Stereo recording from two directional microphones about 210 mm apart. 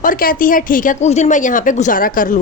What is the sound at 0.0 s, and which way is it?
A woman's voice, 40° left (ahead or behind).